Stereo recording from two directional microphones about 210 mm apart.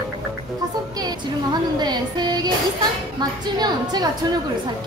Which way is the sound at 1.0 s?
20° right (ahead or behind).